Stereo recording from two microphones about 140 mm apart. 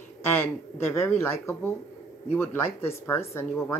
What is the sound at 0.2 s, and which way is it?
Speech, 15° left (ahead or behind).